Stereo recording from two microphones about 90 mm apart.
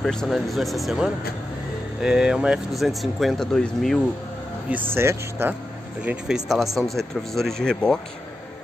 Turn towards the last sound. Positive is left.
turn(degrees=5)  # may be behind; listen again after turning